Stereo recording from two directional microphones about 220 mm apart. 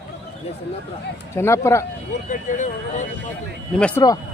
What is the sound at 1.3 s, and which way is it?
Speech, 10° left (ahead or behind).